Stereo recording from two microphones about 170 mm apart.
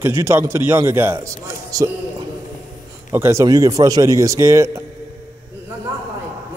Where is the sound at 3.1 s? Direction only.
15° right (ahead or behind).